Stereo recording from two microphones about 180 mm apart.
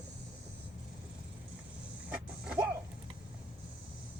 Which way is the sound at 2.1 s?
5° right (ahead or behind).